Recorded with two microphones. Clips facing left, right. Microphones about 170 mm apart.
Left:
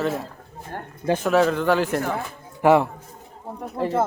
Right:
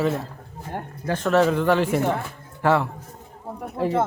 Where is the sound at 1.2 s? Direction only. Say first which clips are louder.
Right 1 dB; centre (ahead or behind).